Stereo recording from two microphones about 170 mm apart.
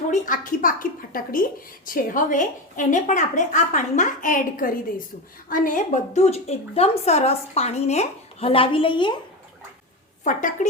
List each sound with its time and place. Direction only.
0.1 s a woman's voice: 50° left (ahead or behind); by 9.1 s 30° left (ahead or behind)
10.2 s a woman's voice: 50° left (ahead or behind)